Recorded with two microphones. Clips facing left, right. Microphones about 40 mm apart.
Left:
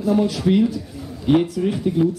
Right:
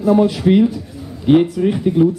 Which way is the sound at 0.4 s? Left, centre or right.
Right.